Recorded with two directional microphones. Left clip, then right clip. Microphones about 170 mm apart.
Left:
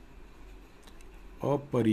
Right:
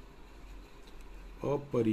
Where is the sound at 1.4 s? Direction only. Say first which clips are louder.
Left 3 dB; 55° left (ahead or behind).